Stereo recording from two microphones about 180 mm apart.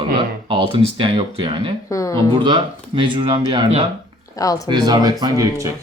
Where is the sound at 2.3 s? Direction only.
25° right (ahead or behind).